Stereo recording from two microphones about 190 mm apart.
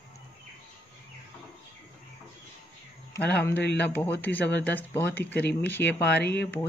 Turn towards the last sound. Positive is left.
turn(degrees=60)  # may be behind; listen again after turning